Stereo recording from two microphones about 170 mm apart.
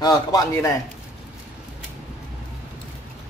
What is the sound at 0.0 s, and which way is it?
Speech, 20° left (ahead or behind).